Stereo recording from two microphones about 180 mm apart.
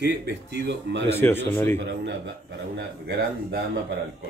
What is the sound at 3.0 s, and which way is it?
Speech, 55° right (ahead or behind).